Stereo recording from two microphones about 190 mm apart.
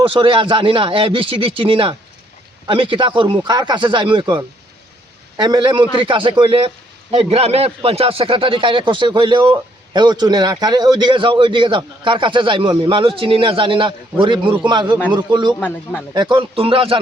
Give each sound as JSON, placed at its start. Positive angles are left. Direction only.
{"t": 0.0, "sound": "a man's voice", "side_deg": -25}
{"t": 15.6, "sound": "speech", "side_deg": 10}
{"t": 16.1, "sound": "a man's voice", "side_deg": -25}